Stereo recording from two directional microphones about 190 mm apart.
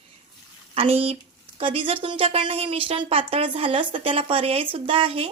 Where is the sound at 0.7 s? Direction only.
30° right (ahead or behind).